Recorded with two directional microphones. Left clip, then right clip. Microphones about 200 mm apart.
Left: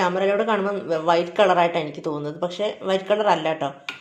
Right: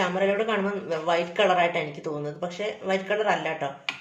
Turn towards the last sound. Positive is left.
turn(degrees=35)  # may be behind; listen again after turning